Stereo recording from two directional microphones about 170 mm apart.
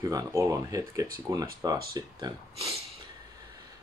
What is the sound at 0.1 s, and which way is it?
Speech, 20° right (ahead or behind).